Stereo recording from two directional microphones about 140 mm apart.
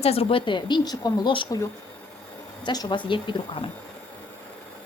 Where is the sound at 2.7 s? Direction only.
30° left (ahead or behind).